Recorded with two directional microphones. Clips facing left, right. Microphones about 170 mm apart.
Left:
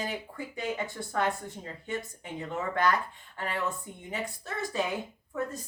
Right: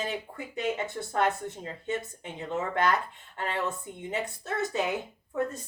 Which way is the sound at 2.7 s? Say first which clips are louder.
Even; 20° right (ahead or behind).